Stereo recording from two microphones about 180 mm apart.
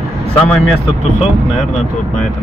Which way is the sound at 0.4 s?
5° left (ahead or behind).